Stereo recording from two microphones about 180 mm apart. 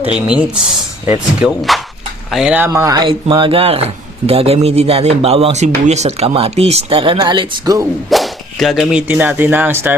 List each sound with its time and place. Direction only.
0.0 s speech: 5° right (ahead or behind)
1.5 s speech: centre (ahead or behind)
2.6 s a man's voice: 15° right (ahead or behind)
8.1 s speech: centre (ahead or behind)